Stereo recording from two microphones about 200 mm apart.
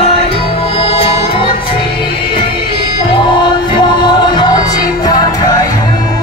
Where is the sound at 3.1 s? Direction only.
20° left (ahead or behind).